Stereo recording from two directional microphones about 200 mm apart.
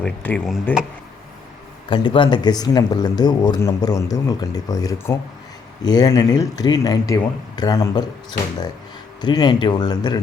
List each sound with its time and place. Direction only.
0.0 s speech: 5° left (ahead or behind)
1.9 s speech: 25° left (ahead or behind)